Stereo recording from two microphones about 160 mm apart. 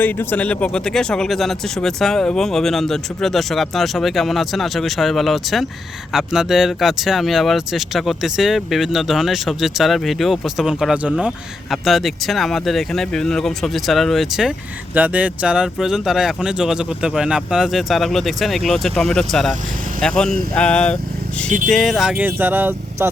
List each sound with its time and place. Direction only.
0.0 s speech: 15° left (ahead or behind); by 23.0 s 10° right (ahead or behind)